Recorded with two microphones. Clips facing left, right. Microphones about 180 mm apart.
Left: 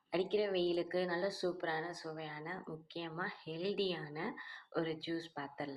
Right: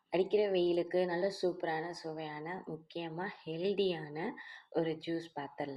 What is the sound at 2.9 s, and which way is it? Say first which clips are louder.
A woman's voice: right 3 dB; 15° right (ahead or behind).